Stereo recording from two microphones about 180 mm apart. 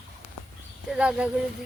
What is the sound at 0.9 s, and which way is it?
Speech, 5° right (ahead or behind).